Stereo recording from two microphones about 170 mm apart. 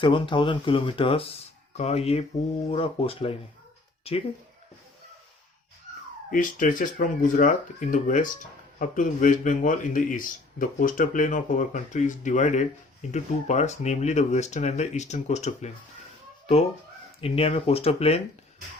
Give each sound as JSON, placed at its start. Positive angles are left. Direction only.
{"t": 0.0, "sound": "speech", "side_deg": 30}
{"t": 6.3, "sound": "speech", "side_deg": 50}
{"t": 17.2, "sound": "speech", "side_deg": 35}